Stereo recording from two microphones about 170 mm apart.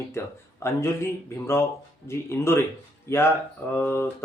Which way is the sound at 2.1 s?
15° left (ahead or behind).